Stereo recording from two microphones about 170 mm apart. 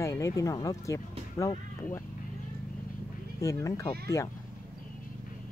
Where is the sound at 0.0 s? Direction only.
20° left (ahead or behind).